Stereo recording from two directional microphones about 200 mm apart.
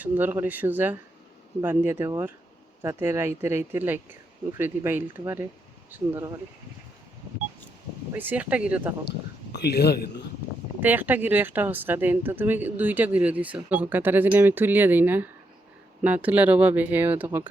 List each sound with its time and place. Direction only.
0.0 s speech: 10° right (ahead or behind)
8.1 s speech: 10° right (ahead or behind)
9.0 s speech: 55° left (ahead or behind)
10.8 s speech: 10° right (ahead or behind)